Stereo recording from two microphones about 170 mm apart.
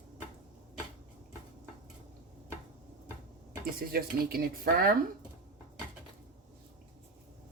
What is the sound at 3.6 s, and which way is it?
Speech, 60° right (ahead or behind).